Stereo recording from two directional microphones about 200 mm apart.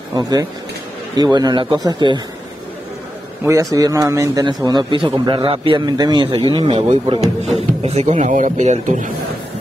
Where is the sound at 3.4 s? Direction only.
15° right (ahead or behind); by 9.1 s 35° right (ahead or behind).